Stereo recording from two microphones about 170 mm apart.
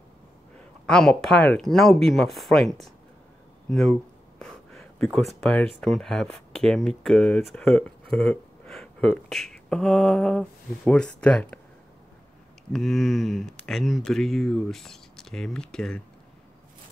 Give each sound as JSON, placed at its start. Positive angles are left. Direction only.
{"t": 0.8, "sound": "speech", "side_deg": 5}
{"t": 12.7, "sound": "speech", "side_deg": 0}